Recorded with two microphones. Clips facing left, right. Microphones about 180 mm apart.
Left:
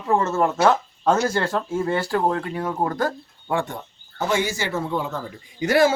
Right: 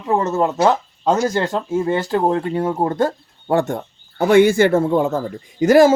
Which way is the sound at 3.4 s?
45° right (ahead or behind).